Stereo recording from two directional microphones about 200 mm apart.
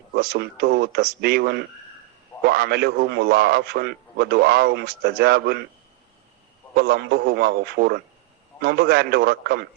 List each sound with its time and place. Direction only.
0.2 s a man's voice: 50° right (ahead or behind)
6.7 s a man's voice: 55° right (ahead or behind)